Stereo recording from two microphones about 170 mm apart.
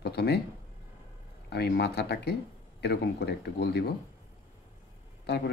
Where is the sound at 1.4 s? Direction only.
70° left (ahead or behind).